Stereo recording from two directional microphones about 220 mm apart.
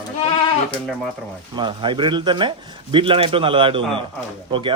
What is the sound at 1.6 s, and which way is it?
Speech, 20° right (ahead or behind).